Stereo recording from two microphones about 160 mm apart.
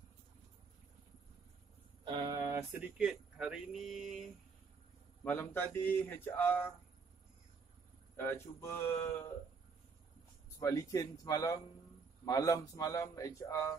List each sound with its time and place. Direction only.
2.0 s a sound: 25° right (ahead or behind)
3.0 s speech: 5° right (ahead or behind)
5.2 s speech: 10° left (ahead or behind)
8.2 s speech: 15° left (ahead or behind)
10.6 s speech: 20° left (ahead or behind)